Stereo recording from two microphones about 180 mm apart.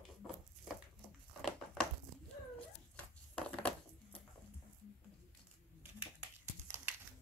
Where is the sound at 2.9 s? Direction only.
5° left (ahead or behind).